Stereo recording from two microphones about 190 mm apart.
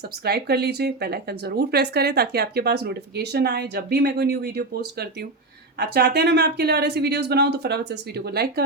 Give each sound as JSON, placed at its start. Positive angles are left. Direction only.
{"t": 0.3, "sound": "speech", "side_deg": -60}